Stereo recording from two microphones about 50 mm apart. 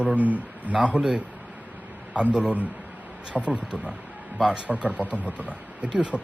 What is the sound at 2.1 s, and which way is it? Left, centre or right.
Speech, right.